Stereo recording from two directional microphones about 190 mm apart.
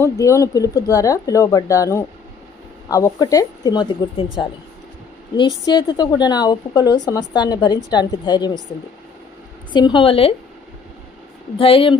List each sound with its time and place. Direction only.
0.0 s a woman's voice: 15° left (ahead or behind)
9.7 s a woman's voice: 25° left (ahead or behind)
11.5 s a woman's voice: 30° left (ahead or behind)